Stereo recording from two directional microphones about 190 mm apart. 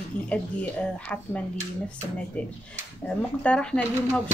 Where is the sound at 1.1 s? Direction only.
5° left (ahead or behind).